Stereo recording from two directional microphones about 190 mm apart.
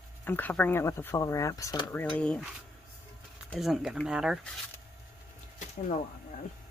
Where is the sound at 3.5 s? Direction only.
Centre (ahead or behind).